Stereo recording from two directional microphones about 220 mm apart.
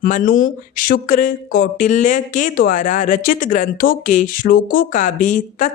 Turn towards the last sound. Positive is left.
turn(degrees=35)  # may be behind; listen again after turning